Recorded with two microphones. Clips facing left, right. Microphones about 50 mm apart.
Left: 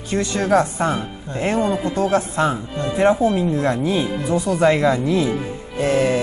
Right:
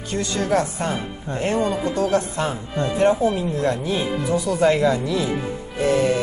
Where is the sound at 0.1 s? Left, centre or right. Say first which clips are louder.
Left 4 dB; left.